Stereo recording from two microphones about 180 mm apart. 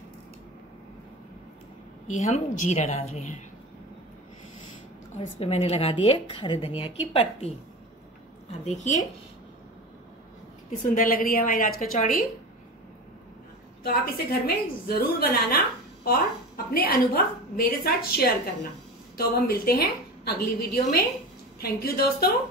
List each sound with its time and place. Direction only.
2.0 s a woman's voice: 40° left (ahead or behind)
5.1 s a woman's voice: 35° left (ahead or behind)
8.6 s a woman's voice: 40° left (ahead or behind)
10.7 s a woman's voice: 50° left (ahead or behind)
13.8 s a woman's voice: 55° left (ahead or behind)